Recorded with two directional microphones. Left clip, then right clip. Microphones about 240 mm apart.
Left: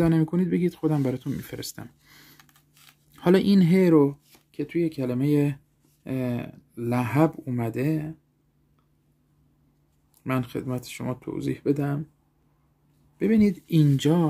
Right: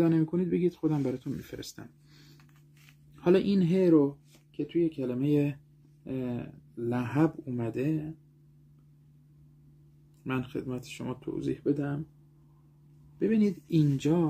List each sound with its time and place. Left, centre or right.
0.0 s speech: left
10.2 s speech: left
13.2 s speech: left